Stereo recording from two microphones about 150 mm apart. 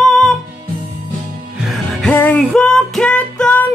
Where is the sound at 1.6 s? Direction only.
Centre (ahead or behind).